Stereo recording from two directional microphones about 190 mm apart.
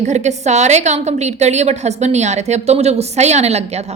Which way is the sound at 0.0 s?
35° right (ahead or behind).